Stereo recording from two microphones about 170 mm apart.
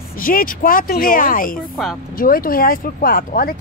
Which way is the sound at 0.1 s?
55° left (ahead or behind).